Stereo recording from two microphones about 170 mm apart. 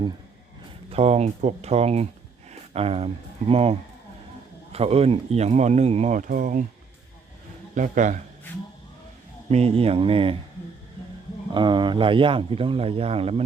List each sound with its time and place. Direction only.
0.9 s speech: 40° right (ahead or behind)
7.8 s a man's voice: 45° right (ahead or behind)
9.5 s speech: 40° right (ahead or behind)
11.5 s speech: 25° right (ahead or behind)